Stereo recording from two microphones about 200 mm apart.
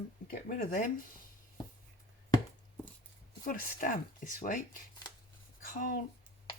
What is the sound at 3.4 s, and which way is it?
Speech, 45° left (ahead or behind).